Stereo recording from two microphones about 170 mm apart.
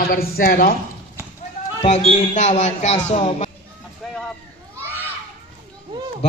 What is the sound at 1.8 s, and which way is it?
A man's voice, 40° left (ahead or behind).